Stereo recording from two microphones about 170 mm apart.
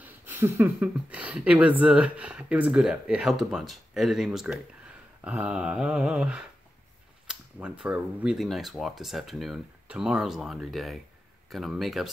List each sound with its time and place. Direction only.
0.0 s speech: 10° right (ahead or behind)